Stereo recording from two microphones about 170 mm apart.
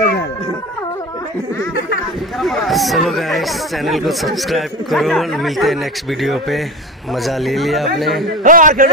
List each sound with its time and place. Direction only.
2.4 s speech: centre (ahead or behind)
8.5 s a man's voice: 50° right (ahead or behind)